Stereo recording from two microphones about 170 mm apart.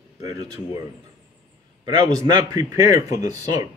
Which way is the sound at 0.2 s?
20° right (ahead or behind).